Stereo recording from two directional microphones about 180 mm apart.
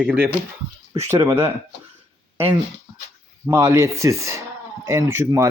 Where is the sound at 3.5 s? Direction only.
15° right (ahead or behind).